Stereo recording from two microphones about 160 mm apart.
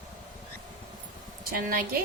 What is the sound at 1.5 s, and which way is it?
Speech, 65° right (ahead or behind).